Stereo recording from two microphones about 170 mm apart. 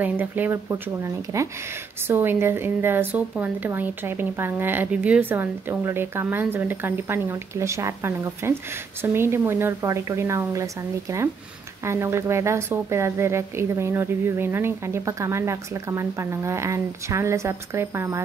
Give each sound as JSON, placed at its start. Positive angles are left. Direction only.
{"t": 0.0, "sound": "a woman's voice", "side_deg": -10}